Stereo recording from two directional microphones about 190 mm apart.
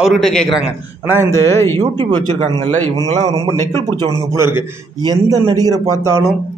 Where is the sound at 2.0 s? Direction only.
25° right (ahead or behind).